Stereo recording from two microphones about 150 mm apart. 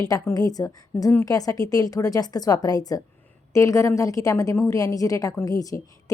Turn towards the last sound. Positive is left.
turn(degrees=20)  # may be behind; listen again after turning